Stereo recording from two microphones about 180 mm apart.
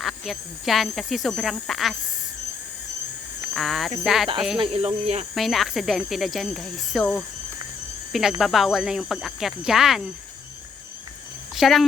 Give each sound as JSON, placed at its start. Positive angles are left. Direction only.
{"t": 0.0, "sound": "speech", "side_deg": 0}
{"t": 3.5, "sound": "speech", "side_deg": 0}
{"t": 4.5, "sound": "speech", "side_deg": -30}
{"t": 5.3, "sound": "speech", "side_deg": 0}
{"t": 11.5, "sound": "speech", "side_deg": 0}